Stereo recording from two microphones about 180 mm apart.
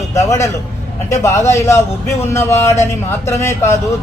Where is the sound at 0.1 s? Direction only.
15° left (ahead or behind).